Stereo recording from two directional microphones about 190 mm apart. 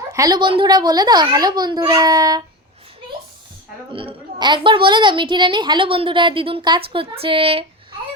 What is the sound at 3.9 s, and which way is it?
A woman's voice, 30° right (ahead or behind).